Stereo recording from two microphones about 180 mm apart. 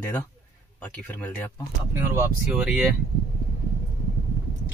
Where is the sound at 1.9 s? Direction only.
15° right (ahead or behind).